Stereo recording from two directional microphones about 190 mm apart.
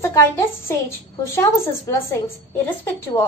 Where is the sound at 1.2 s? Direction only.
15° left (ahead or behind).